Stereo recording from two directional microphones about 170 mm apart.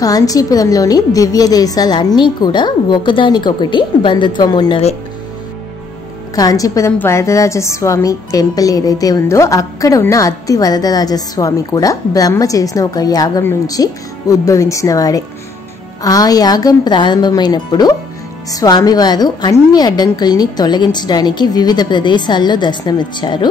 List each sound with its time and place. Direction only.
0.0 s a woman's voice: 20° left (ahead or behind)
6.3 s a woman's voice: 20° left (ahead or behind)